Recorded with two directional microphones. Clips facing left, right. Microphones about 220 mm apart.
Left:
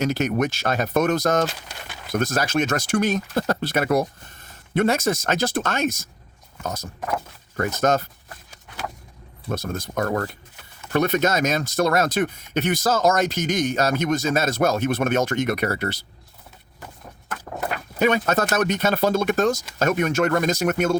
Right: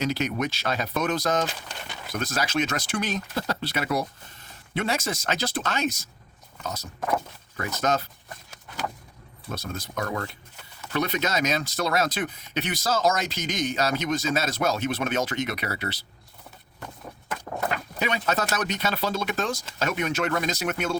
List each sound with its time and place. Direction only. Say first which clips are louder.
0.0 s speech: left 5 dB; 45° left (ahead or behind)
7.5 s speech: left 5 dB; 50° left (ahead or behind)
9.5 s speech: left 6 dB; 50° left (ahead or behind)
18.0 s speech: left 8 dB; 50° left (ahead or behind)